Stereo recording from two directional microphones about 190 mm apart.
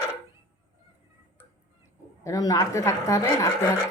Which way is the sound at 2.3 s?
15° left (ahead or behind).